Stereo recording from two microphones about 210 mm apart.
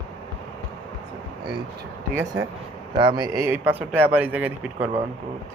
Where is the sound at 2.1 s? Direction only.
10° right (ahead or behind).